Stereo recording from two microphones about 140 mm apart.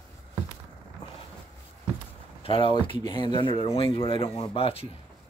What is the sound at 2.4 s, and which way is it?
Speech, 40° left (ahead or behind).